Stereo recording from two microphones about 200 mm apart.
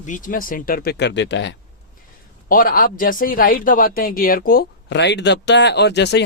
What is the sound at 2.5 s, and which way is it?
Speech, 45° left (ahead or behind).